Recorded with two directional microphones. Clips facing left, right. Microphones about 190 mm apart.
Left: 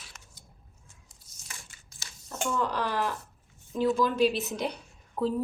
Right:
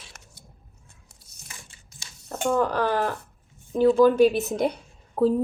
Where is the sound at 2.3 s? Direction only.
60° right (ahead or behind).